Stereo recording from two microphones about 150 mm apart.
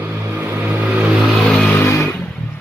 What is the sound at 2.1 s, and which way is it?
Vehicle, 5° left (ahead or behind).